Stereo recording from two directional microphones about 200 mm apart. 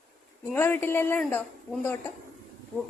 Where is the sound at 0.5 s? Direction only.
10° left (ahead or behind).